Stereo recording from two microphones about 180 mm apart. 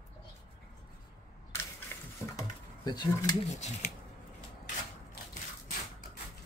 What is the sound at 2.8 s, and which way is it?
Speech, 20° left (ahead or behind).